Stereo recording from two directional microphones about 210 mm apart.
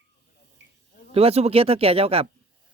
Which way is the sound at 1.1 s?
30° right (ahead or behind).